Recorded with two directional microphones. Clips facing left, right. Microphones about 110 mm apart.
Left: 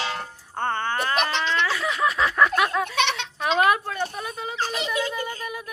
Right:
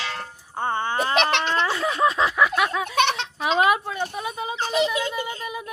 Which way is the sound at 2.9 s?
45° right (ahead or behind).